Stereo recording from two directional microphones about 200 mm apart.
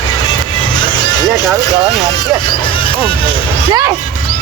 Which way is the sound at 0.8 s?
20° left (ahead or behind).